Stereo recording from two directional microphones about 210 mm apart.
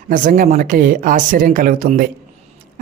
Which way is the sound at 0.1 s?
40° right (ahead or behind).